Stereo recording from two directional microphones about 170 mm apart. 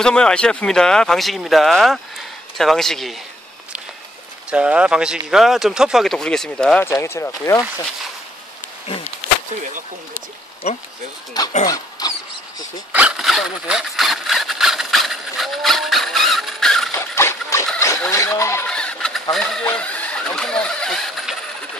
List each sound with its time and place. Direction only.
0.0 s speech: 5° left (ahead or behind)
4.5 s speech: 5° right (ahead or behind)
6.9 s speech: 15° left (ahead or behind)
10.6 s speech: 40° left (ahead or behind)
11.6 s dog: 20° left (ahead or behind)
12.9 s a sound: 5° right (ahead or behind)
16.9 s a sound: 15° left (ahead or behind)
18.1 s speech: 20° left (ahead or behind)
18.7 s vehicle: 5° left (ahead or behind)
19.3 s a sound: 5° left (ahead or behind)